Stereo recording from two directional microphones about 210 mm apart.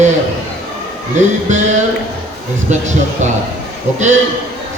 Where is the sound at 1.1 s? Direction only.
35° right (ahead or behind).